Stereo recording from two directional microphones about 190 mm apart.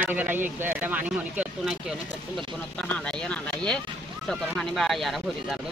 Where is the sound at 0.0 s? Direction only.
10° right (ahead or behind).